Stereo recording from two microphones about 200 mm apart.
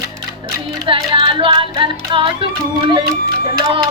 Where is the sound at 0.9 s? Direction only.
25° right (ahead or behind).